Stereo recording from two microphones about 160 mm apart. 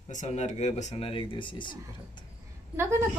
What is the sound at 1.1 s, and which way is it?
Speech, 30° left (ahead or behind).